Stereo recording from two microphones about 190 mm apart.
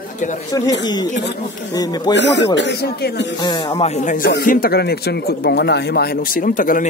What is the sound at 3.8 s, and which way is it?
Speech, 40° left (ahead or behind).